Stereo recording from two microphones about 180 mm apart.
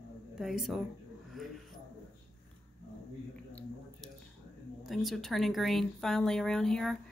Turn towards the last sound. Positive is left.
turn(degrees=5)  # may be behind; listen again after turning